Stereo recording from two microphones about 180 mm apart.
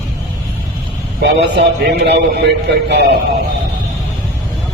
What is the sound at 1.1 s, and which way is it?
A man's voice, 70° right (ahead or behind).